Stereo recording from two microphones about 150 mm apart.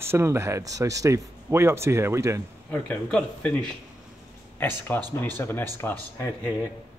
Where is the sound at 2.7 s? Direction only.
10° left (ahead or behind).